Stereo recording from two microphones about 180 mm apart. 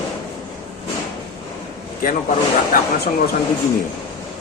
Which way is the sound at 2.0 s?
50° left (ahead or behind).